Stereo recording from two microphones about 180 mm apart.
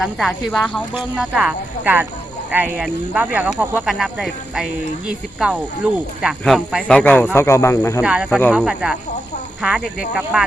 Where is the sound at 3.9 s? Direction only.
Centre (ahead or behind); by 8.0 s 15° left (ahead or behind).